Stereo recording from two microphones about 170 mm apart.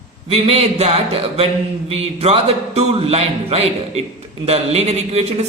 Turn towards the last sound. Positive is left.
turn(degrees=-40)  # may be behind; listen again after turning